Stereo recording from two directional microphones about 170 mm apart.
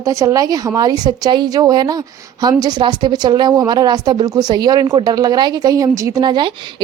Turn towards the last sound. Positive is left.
turn(degrees=-25)  # may be behind; listen again after turning